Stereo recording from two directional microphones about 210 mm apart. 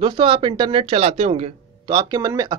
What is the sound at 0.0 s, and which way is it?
Speech, 25° right (ahead or behind).